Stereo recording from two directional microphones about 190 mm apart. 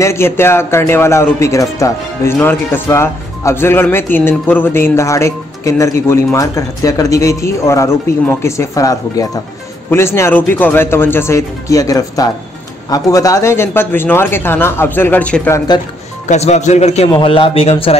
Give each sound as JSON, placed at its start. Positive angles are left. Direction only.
{"t": 0.0, "sound": "a man's voice", "side_deg": 15}
{"t": 16.3, "sound": "a man's voice", "side_deg": 35}